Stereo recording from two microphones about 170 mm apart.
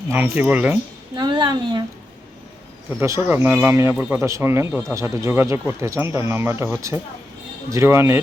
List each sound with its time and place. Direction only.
0.1 s speech: 10° right (ahead or behind)
1.1 s a woman's voice: 25° right (ahead or behind)
3.0 s speech: 15° right (ahead or behind)